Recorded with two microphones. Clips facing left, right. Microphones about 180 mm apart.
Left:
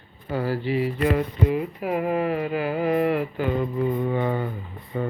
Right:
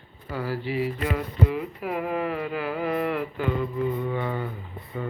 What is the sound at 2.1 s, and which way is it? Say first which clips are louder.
Speech: left 4 dB; 45° left (ahead or behind).